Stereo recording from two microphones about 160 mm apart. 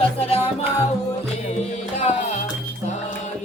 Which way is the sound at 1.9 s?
45° left (ahead or behind).